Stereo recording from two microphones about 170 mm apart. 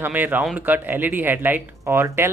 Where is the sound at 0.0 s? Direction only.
10° right (ahead or behind).